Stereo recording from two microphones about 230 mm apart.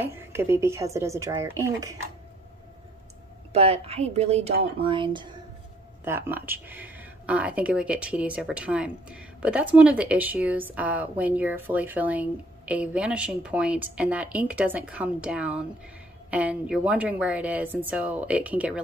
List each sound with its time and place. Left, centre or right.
0.0 s a woman's voice: centre
3.5 s speech: right
6.0 s speech: centre